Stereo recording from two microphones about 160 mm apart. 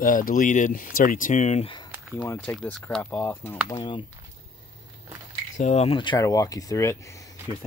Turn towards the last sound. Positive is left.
turn(degrees=20)  # may be behind; listen again after turning